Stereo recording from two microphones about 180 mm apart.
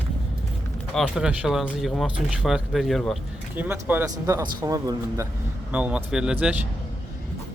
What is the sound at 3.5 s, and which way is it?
Speech, 10° right (ahead or behind).